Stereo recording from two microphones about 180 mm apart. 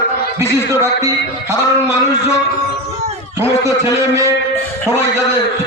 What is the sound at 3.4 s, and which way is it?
Speech, 15° right (ahead or behind).